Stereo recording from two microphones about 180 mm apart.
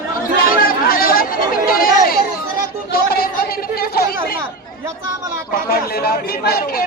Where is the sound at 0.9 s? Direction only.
55° left (ahead or behind).